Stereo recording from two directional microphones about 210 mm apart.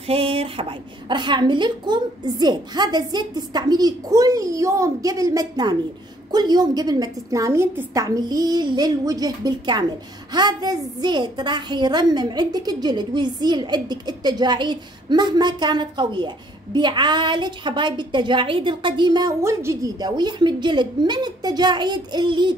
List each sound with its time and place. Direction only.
0.0 s a woman's voice: 25° right (ahead or behind)